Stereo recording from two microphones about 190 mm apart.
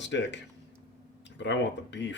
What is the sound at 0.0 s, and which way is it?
Speech, 70° left (ahead or behind).